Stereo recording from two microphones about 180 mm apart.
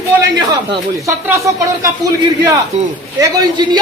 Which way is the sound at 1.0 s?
15° right (ahead or behind).